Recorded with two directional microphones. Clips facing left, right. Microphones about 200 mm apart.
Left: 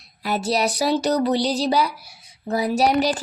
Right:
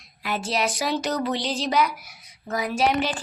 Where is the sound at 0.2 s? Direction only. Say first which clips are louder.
Left 4 dB; 40° left (ahead or behind).